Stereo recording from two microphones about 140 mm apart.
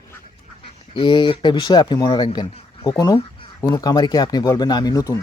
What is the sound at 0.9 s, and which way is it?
Speech, 35° left (ahead or behind).